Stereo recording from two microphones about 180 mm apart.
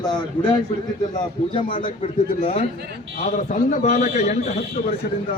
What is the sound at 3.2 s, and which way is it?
A man's voice, 50° left (ahead or behind).